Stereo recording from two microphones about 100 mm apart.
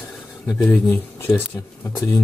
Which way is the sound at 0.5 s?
15° left (ahead or behind).